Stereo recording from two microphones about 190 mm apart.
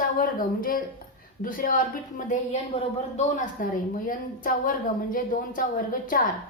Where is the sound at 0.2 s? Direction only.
50° left (ahead or behind).